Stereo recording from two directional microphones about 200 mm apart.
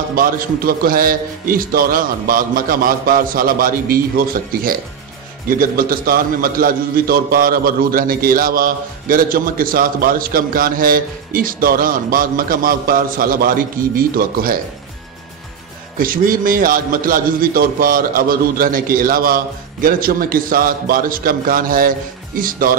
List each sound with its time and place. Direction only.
0.1 s a man's voice: 45° right (ahead or behind)
16.0 s a man's voice: 45° right (ahead or behind)